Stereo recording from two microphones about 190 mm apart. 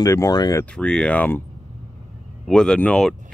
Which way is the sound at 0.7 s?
5° left (ahead or behind).